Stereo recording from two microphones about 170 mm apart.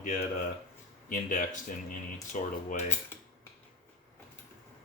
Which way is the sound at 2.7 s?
40° left (ahead or behind).